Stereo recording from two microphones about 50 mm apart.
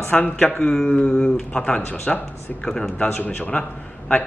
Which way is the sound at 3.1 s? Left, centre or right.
Left.